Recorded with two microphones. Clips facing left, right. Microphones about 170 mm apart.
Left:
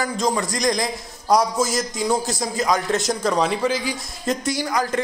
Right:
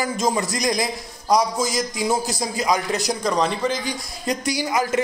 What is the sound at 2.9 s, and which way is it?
A man's voice, centre (ahead or behind).